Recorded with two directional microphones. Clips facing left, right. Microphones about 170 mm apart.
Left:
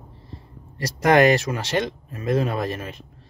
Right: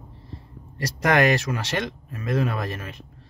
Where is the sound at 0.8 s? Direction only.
25° left (ahead or behind).